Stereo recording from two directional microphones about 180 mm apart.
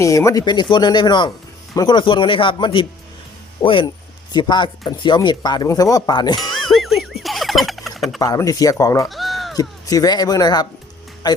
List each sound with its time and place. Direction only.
0.0 s speech: 15° left (ahead or behind)
6.7 s a sound: centre (ahead or behind)
8.2 s speech: 20° left (ahead or behind)
9.0 s bleat: centre (ahead or behind)
9.6 s speech: 20° left (ahead or behind)